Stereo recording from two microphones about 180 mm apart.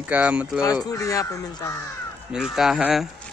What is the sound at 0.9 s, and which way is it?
Speech, 20° left (ahead or behind).